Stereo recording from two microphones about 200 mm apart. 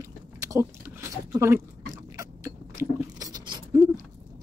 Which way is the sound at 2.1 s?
15° right (ahead or behind).